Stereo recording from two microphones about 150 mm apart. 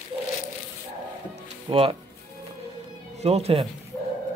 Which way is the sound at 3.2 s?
45° right (ahead or behind).